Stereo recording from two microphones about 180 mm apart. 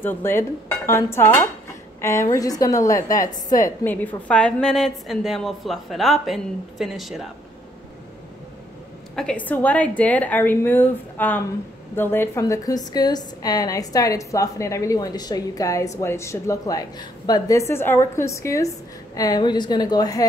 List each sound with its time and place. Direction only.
0.0 s a woman's voice: 15° left (ahead or behind)
9.1 s a woman's voice: 5° left (ahead or behind); by 20.2 s 20° left (ahead or behind)